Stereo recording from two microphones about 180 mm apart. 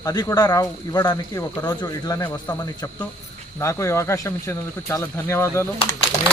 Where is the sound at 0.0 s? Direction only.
20° left (ahead or behind).